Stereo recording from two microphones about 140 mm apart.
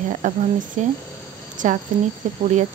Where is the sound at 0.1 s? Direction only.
65° right (ahead or behind).